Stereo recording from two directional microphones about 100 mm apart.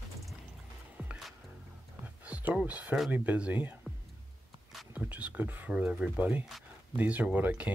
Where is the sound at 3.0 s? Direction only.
15° right (ahead or behind).